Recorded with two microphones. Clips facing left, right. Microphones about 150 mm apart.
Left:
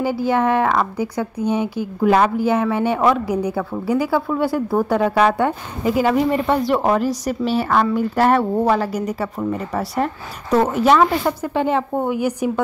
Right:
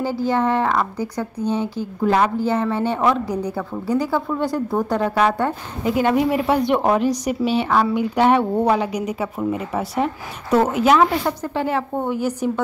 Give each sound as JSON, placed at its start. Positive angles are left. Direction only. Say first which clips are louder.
{"t": 0.0, "sound": "a woman's voice", "louder": "left 2 dB", "side_deg": 15}
{"t": 11.4, "sound": "a woman's voice", "louder": "left 3 dB", "side_deg": 20}